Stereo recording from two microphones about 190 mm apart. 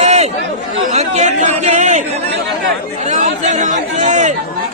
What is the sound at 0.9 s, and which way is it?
Speech, 40° right (ahead or behind).